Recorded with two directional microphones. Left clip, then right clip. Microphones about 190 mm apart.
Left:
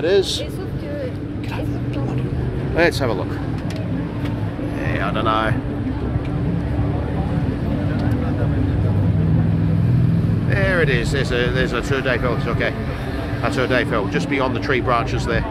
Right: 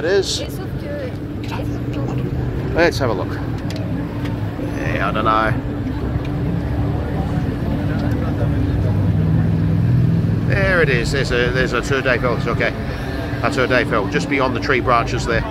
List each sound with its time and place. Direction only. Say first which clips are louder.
0.0 s speech: even; 30° left (ahead or behind)
2.7 s speech: right 1 dB; 5° left (ahead or behind)
4.9 s speech: right 3 dB; centre (ahead or behind)
10.5 s speech: right 3 dB; 5° right (ahead or behind)